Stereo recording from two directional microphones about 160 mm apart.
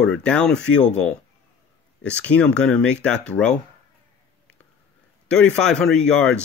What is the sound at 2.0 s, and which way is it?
Speech, 10° left (ahead or behind).